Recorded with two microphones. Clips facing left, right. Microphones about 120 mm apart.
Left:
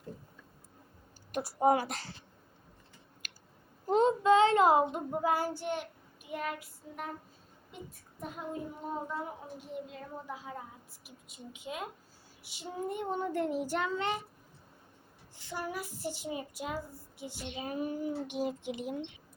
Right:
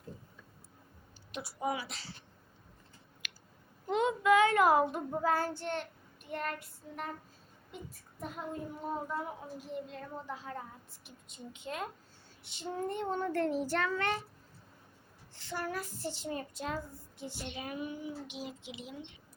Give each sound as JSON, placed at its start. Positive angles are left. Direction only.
{"t": 1.3, "sound": "speech", "side_deg": 45}
{"t": 3.2, "sound": "clicking", "side_deg": 40}
{"t": 3.8, "sound": "child singing", "side_deg": 35}
{"t": 7.7, "sound": "a woman's voice", "side_deg": 0}
{"t": 15.4, "sound": "a woman's voice", "side_deg": 15}
{"t": 17.6, "sound": "speech", "side_deg": 35}